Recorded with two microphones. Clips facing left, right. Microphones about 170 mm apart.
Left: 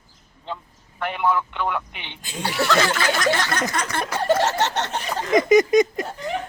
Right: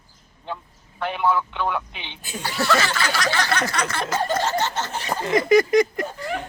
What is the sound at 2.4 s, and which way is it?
Speech, 55° left (ahead or behind).